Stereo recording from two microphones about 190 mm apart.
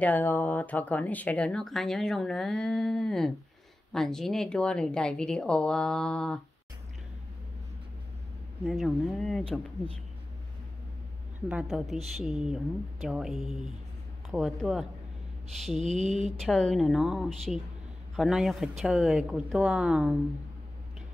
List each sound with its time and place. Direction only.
0.0 s speech: 10° left (ahead or behind)
8.6 s speech: centre (ahead or behind)
11.4 s speech: 5° right (ahead or behind)
15.8 s mantra: 35° right (ahead or behind)
16.3 s speech: 5° left (ahead or behind)